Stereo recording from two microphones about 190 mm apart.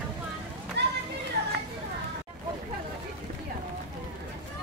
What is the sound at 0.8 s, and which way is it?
Children playing, 65° right (ahead or behind).